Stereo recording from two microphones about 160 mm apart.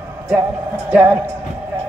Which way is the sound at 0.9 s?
10° right (ahead or behind).